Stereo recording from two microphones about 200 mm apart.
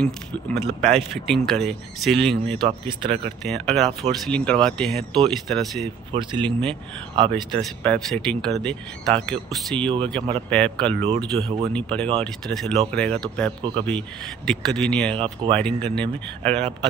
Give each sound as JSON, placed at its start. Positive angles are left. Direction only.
{"t": 0.7, "sound": "speech", "side_deg": 0}
{"t": 2.6, "sound": "speech", "side_deg": -25}
{"t": 3.4, "sound": "speech", "side_deg": 0}
{"t": 6.1, "sound": "speech", "side_deg": -25}
{"t": 7.5, "sound": "speech", "side_deg": 5}